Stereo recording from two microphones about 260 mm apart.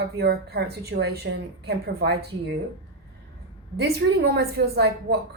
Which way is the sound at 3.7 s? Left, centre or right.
Right.